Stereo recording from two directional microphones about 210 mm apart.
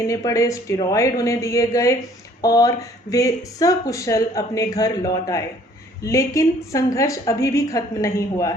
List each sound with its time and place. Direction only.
0.1 s speech: 15° left (ahead or behind)